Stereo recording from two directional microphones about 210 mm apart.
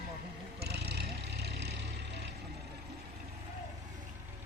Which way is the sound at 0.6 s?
50° right (ahead or behind).